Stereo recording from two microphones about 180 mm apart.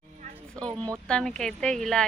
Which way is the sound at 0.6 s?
20° right (ahead or behind).